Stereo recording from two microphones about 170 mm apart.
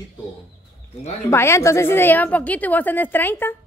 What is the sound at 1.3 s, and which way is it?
Speech, 15° left (ahead or behind).